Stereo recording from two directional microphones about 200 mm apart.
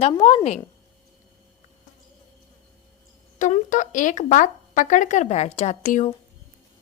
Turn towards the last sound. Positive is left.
turn(degrees=35)  # may be behind; listen again after turning